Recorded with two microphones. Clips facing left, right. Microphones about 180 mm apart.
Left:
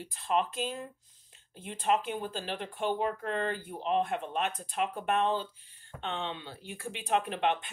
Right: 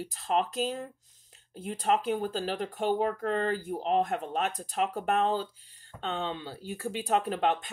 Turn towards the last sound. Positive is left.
turn(degrees=-40)  # may be behind; listen again after turning